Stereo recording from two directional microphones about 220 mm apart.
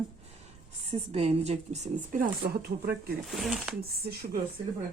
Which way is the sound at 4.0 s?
45° right (ahead or behind).